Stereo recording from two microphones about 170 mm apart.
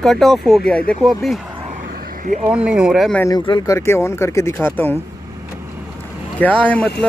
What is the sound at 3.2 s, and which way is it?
Speech, 20° left (ahead or behind).